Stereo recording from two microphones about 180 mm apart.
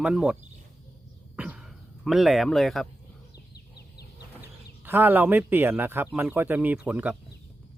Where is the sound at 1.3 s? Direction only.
5° right (ahead or behind).